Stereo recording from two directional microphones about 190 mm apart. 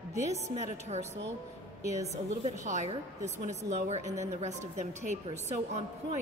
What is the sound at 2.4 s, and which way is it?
A woman's voice, 40° right (ahead or behind).